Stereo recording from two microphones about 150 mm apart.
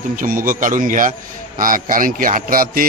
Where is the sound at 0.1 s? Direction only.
65° right (ahead or behind).